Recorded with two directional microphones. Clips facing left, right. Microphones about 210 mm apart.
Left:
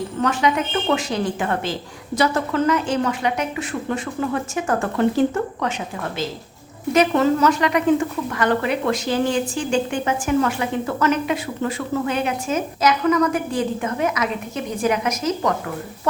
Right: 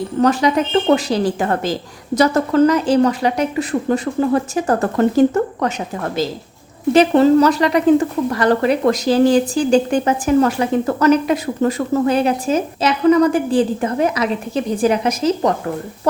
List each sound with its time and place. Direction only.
0.2 s speech: 35° right (ahead or behind)
6.9 s speech: 30° right (ahead or behind)